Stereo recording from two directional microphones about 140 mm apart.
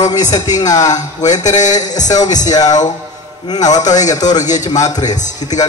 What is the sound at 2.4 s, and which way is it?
A man's voice, 25° left (ahead or behind).